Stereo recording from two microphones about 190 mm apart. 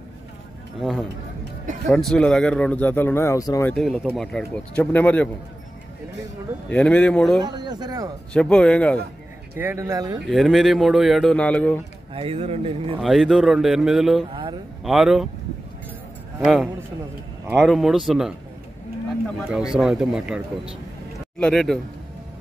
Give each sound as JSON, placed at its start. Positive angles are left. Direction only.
{"t": 0.7, "sound": "a man's voice", "side_deg": 0}
{"t": 3.7, "sound": "a man's voice", "side_deg": 5}
{"t": 6.7, "sound": "a man's voice", "side_deg": 5}
{"t": 7.4, "sound": "speech", "side_deg": -20}
{"t": 8.3, "sound": "a man's voice", "side_deg": 5}
{"t": 9.6, "sound": "speech", "side_deg": -15}
{"t": 10.2, "sound": "a man's voice", "side_deg": 0}
{"t": 12.1, "sound": "speech", "side_deg": -30}
{"t": 13.0, "sound": "a man's voice", "side_deg": 0}
{"t": 16.3, "sound": "a man's voice", "side_deg": 0}
{"t": 19.7, "sound": "a man's voice", "side_deg": -5}